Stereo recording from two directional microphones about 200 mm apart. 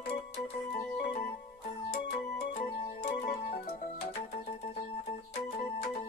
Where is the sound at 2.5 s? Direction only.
30° left (ahead or behind).